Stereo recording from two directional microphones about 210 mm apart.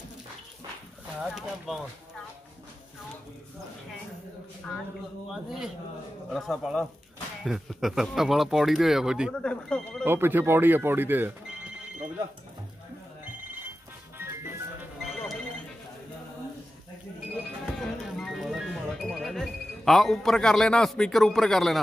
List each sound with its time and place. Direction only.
1.2 s speech: centre (ahead or behind)
6.3 s speech: centre (ahead or behind)
10.0 s speech: 10° right (ahead or behind)
14.1 s music: 10° right (ahead or behind)
15.0 s music: centre (ahead or behind)
17.7 s music: centre (ahead or behind)